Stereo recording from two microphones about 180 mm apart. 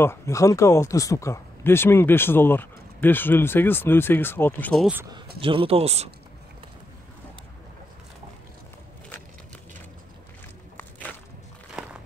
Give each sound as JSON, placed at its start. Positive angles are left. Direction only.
{"t": 0.0, "sound": "speech", "side_deg": 15}
{"t": 5.4, "sound": "speech", "side_deg": -30}
{"t": 11.8, "sound": "a sound", "side_deg": 0}